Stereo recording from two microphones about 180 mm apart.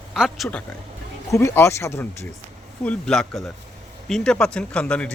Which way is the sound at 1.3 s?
15° left (ahead or behind).